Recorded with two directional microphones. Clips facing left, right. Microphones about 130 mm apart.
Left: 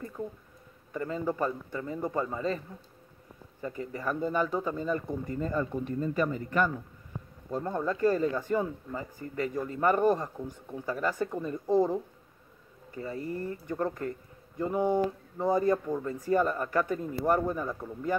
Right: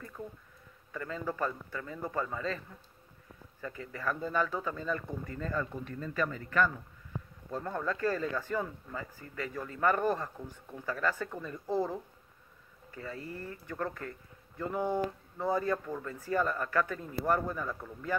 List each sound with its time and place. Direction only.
0.9 s speech: 25° left (ahead or behind)
3.6 s speech: 25° left (ahead or behind)